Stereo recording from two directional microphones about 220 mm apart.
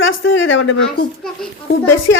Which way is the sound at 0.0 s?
60° left (ahead or behind).